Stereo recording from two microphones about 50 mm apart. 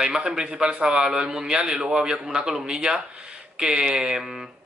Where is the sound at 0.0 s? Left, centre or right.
Centre.